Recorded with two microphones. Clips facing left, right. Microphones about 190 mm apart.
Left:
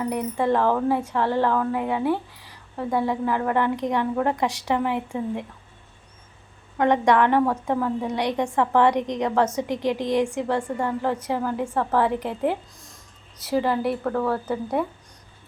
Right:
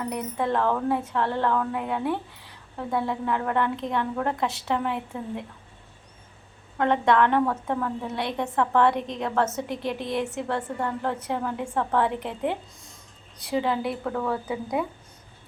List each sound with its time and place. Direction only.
0.0 s a woman's voice: 10° left (ahead or behind)
6.7 s a woman's voice: 15° left (ahead or behind)